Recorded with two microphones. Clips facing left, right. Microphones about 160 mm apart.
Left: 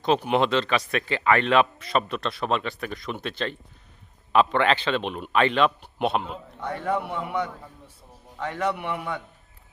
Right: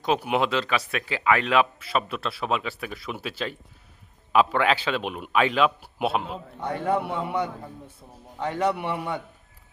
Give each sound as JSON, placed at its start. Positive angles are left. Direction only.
{"t": 0.0, "sound": "speech", "side_deg": -10}
{"t": 6.8, "sound": "a man's voice", "side_deg": -30}